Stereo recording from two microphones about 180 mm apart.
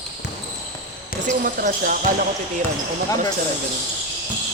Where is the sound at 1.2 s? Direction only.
50° right (ahead or behind).